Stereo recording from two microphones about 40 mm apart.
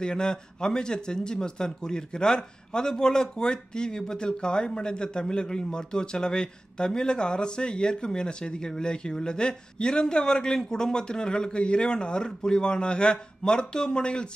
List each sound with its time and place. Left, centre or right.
0.0 s speech: left